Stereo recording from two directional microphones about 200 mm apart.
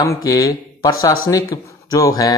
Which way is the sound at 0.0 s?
15° left (ahead or behind).